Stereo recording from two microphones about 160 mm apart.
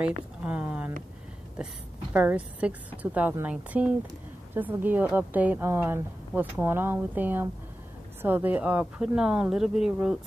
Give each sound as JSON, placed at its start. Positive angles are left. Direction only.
{"t": 0.0, "sound": "a woman's voice", "side_deg": -10}
{"t": 2.1, "sound": "a woman's voice", "side_deg": -10}